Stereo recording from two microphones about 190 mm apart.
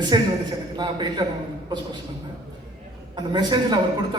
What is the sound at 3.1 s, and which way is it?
Speech, 25° right (ahead or behind).